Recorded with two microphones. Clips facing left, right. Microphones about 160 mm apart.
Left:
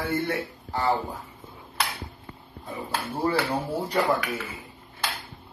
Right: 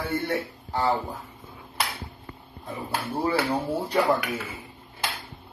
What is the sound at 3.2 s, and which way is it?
Speech, 10° right (ahead or behind).